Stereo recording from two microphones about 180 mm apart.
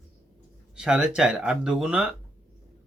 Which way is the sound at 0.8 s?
5° right (ahead or behind).